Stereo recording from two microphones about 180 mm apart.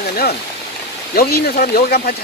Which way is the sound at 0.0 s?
60° left (ahead or behind).